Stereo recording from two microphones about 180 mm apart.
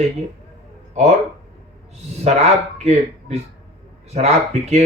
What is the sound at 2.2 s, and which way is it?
Speech, 35° right (ahead or behind).